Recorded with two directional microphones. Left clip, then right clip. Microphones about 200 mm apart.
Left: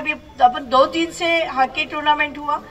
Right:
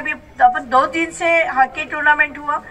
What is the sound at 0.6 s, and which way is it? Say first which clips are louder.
A woman's voice: even; 45° left (ahead or behind).